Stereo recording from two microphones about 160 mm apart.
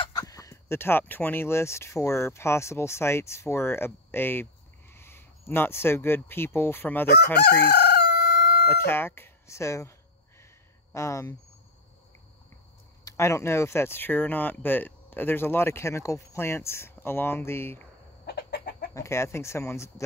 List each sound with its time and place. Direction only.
0.1 s speech: 20° left (ahead or behind)
7.3 s chicken: 85° left
8.6 s speech: 15° left (ahead or behind)
13.0 s speech: 20° left (ahead or behind)
18.2 s chicken: 90° left
18.9 s speech: 15° left (ahead or behind)